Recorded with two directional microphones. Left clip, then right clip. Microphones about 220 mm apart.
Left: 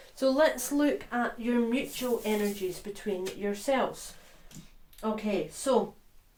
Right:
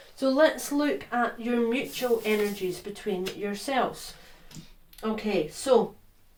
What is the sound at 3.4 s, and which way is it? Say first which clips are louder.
Speech: even; 30° left (ahead or behind).